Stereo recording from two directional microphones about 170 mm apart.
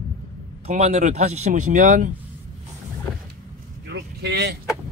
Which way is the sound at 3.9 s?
80° right.